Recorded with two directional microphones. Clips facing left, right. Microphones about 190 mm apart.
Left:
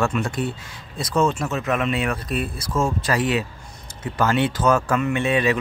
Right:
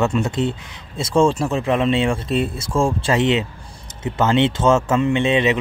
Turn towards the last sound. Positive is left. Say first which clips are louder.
# right 3 dB
turn(degrees=-20)  # may be behind; listen again after turning